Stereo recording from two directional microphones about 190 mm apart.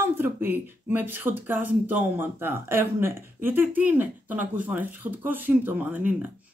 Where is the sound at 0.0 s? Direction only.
10° right (ahead or behind).